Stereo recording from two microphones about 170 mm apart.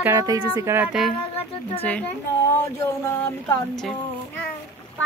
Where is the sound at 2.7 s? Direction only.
15° left (ahead or behind).